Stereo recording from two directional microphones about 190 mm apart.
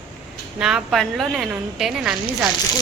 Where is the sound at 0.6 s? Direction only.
Centre (ahead or behind).